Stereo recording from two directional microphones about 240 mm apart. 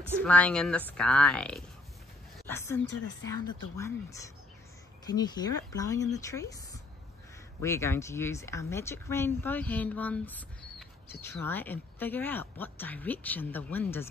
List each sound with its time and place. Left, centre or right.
0.2 s a woman's voice: centre
2.9 s speech: left
3.4 s speech: centre